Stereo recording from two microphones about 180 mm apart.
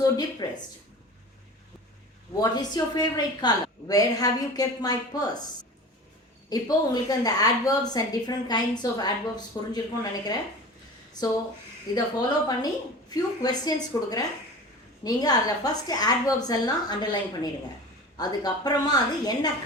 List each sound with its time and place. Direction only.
0.0 s a woman's voice: 25° left (ahead or behind)
2.4 s a woman's voice: 20° left (ahead or behind)
6.5 s a woman's voice: 20° left (ahead or behind)
11.9 s a woman's voice: 20° left (ahead or behind)